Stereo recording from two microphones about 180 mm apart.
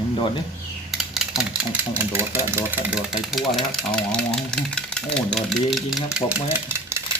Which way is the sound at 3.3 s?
Centre (ahead or behind).